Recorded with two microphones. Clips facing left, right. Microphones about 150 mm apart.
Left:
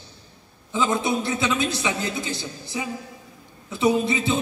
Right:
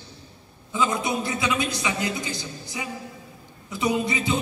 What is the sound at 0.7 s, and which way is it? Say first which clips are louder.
A man's voice: left 2 dB; 25° left (ahead or behind).